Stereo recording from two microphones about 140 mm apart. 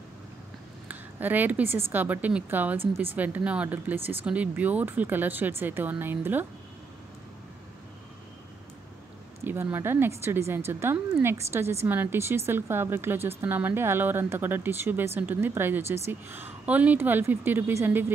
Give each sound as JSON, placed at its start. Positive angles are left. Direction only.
{"t": 0.8, "sound": "speech", "side_deg": -15}
{"t": 9.4, "sound": "speech", "side_deg": -15}